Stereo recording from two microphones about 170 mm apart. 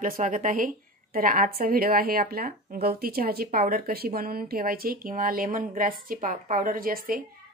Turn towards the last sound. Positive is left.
turn(degrees=-55)  # may be behind; listen again after turning